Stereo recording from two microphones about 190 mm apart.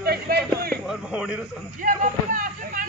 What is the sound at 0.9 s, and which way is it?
Speech, 5° right (ahead or behind).